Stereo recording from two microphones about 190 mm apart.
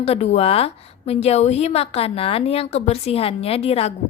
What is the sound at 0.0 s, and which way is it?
A woman's voice, 35° left (ahead or behind).